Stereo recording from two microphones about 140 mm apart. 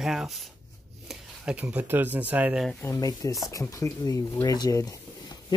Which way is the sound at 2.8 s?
25° left (ahead or behind).